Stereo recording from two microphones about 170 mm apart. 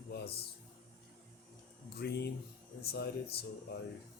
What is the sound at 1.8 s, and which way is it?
Speech, 70° left (ahead or behind).